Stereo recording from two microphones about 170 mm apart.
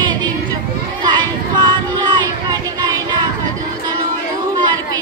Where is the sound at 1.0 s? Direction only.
25° right (ahead or behind).